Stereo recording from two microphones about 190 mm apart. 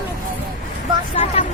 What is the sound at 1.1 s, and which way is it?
Vehicle, 35° left (ahead or behind).